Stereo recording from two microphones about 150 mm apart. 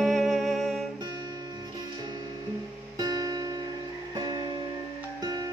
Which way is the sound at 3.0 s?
25° right (ahead or behind).